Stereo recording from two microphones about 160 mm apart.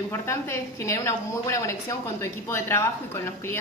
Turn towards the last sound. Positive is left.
turn(degrees=15)  # may be behind; listen again after turning